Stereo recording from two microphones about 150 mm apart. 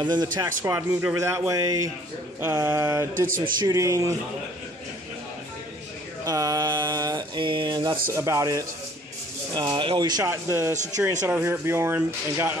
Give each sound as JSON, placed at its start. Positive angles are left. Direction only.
{"t": 0.0, "sound": "speech", "side_deg": -30}
{"t": 0.7, "sound": "speech", "side_deg": -15}
{"t": 3.3, "sound": "a man's voice", "side_deg": -70}
{"t": 3.5, "sound": "speech", "side_deg": -20}
{"t": 6.2, "sound": "mantra", "side_deg": -25}
{"t": 8.1, "sound": "speech", "side_deg": -20}
{"t": 10.2, "sound": "speech", "side_deg": -15}